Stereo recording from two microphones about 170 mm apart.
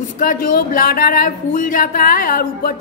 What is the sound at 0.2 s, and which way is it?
A woman's voice, 55° left (ahead or behind).